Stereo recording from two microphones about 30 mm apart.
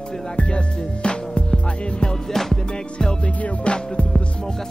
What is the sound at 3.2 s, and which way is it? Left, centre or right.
Music, left.